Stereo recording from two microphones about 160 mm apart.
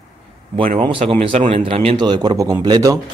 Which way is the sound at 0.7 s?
35° right (ahead or behind).